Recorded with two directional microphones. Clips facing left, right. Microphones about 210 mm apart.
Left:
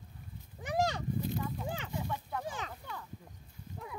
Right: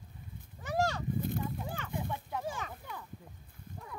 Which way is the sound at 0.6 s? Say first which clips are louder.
Even; 15° left (ahead or behind).